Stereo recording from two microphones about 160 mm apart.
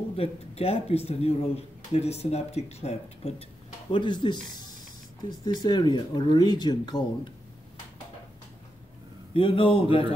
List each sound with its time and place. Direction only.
0.1 s speech: 40° left (ahead or behind)
5.4 s speech: 25° left (ahead or behind)
9.3 s speech: 35° left (ahead or behind)